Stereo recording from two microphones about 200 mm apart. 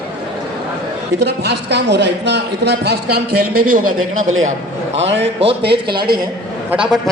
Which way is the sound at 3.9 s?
90° right.